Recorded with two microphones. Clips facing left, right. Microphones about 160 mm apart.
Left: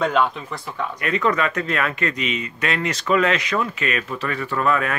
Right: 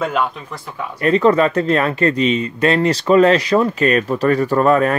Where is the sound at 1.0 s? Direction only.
35° right (ahead or behind).